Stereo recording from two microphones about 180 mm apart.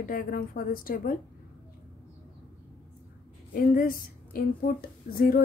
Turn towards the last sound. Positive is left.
turn(degrees=45)  # may be behind; listen again after turning